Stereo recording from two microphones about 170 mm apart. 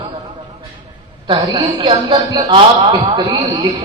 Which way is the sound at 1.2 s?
30° right (ahead or behind).